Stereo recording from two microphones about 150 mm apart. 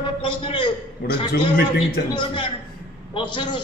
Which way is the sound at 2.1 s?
35° left (ahead or behind).